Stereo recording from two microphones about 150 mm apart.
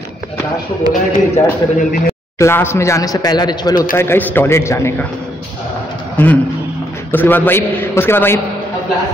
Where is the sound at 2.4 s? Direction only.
15° left (ahead or behind).